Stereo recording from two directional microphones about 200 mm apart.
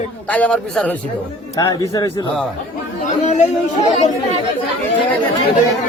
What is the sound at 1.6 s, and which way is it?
Speech, 20° left (ahead or behind).